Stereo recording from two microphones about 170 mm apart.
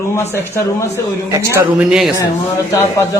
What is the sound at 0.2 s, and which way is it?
Speech, 15° left (ahead or behind).